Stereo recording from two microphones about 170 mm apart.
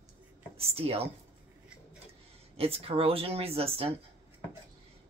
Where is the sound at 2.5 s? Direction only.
35° right (ahead or behind).